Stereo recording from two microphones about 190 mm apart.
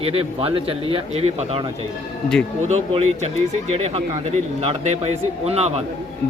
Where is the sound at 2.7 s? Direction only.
35° right (ahead or behind).